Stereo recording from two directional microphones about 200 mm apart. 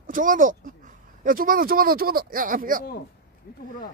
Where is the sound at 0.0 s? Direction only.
40° right (ahead or behind).